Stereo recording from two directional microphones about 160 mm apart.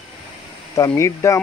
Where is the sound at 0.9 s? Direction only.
20° left (ahead or behind).